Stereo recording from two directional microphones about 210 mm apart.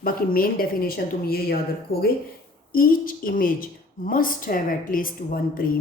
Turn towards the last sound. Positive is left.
turn(degrees=40)  # may be behind; listen again after turning